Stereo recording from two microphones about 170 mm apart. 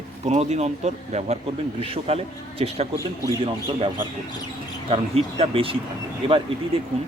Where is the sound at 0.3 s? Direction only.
40° right (ahead or behind).